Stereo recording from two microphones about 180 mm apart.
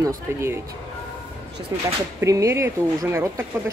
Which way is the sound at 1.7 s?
15° right (ahead or behind).